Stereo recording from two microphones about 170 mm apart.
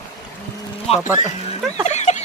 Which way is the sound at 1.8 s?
40° left (ahead or behind).